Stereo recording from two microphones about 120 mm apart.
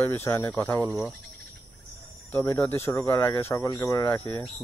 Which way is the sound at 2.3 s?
25° left (ahead or behind).